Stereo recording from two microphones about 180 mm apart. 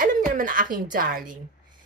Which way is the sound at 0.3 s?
50° right (ahead or behind).